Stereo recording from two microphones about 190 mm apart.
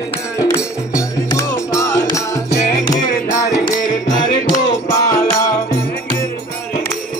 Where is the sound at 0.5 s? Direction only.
15° left (ahead or behind).